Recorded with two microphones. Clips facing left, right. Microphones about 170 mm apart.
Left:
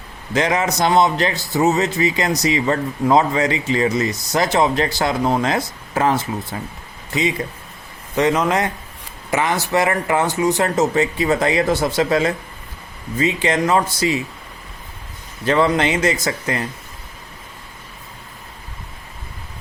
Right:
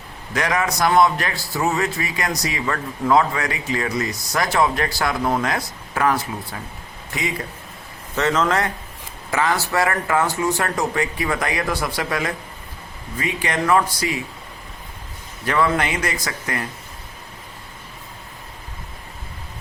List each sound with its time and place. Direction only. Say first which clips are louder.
0.3 s speech: left 3 dB; 25° left (ahead or behind)
8.1 s a man's voice: left 3 dB; 15° left (ahead or behind)
15.4 s speech: left 4 dB; 25° left (ahead or behind)